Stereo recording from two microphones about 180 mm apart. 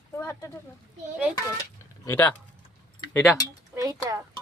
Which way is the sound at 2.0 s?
10° left (ahead or behind).